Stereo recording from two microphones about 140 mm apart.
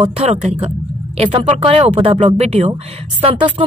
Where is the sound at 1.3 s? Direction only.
40° right (ahead or behind).